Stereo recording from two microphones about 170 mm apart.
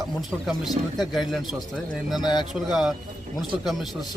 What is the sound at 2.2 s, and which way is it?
Speech, 25° left (ahead or behind).